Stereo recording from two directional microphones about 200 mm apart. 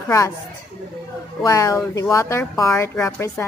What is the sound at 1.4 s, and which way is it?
A woman's voice, 15° left (ahead or behind).